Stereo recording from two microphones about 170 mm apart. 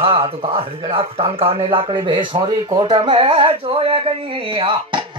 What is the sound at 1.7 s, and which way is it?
Speech, 30° right (ahead or behind).